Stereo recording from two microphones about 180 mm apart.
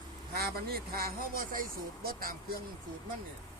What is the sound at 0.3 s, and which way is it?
Speech, 55° right (ahead or behind).